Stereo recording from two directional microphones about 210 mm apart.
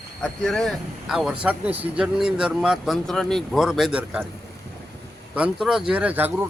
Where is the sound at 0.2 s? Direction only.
5° left (ahead or behind).